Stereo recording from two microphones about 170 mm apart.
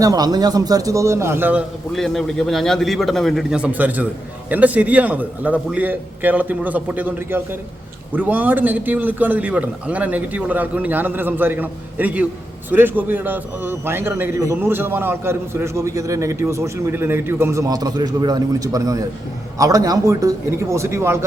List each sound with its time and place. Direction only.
0.0 s a man's voice: 20° right (ahead or behind)
1.9 s a man's voice: centre (ahead or behind); by 21.2 s 15° right (ahead or behind)